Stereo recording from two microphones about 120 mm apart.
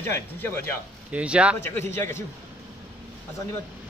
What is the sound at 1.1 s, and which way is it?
Speech, 10° right (ahead or behind).